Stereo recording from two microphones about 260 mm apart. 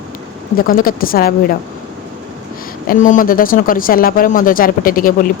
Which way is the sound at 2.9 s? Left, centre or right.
Left.